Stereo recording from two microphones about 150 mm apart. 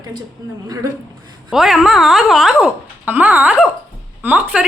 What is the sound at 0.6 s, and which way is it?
Speech, 20° right (ahead or behind).